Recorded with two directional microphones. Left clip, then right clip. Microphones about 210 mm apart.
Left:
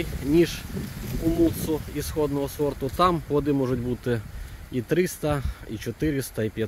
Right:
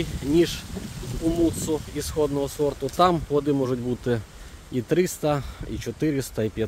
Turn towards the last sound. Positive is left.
turn(degrees=-5)  # may be behind; listen again after turning